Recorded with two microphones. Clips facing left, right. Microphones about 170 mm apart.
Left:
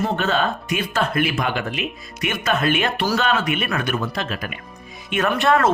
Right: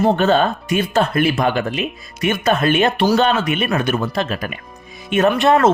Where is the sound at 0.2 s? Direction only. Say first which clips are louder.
Right 6 dB; 35° right (ahead or behind).